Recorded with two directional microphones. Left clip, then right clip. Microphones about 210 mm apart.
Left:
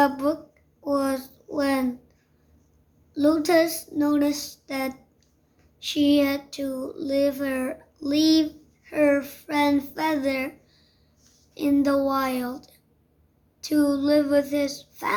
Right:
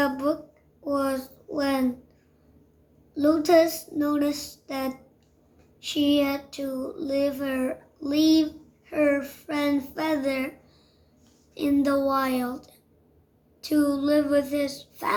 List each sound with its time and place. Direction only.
0.0 s a woman's voice: 20° left (ahead or behind)
0.9 s a sound: 20° left (ahead or behind)
3.2 s child singing: 20° left (ahead or behind)
11.5 s a child's voice: 15° left (ahead or behind)